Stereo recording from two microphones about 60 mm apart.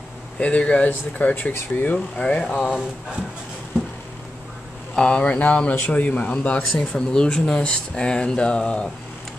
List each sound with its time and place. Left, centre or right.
0.4 s speech: left
2.6 s speech: centre
4.9 s speech: centre